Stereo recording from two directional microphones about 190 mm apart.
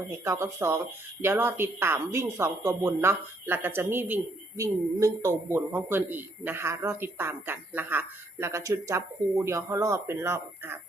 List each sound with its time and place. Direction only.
0.3 s speech: 15° right (ahead or behind)